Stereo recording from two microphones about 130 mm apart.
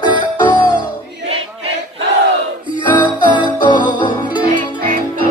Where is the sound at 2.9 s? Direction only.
35° left (ahead or behind).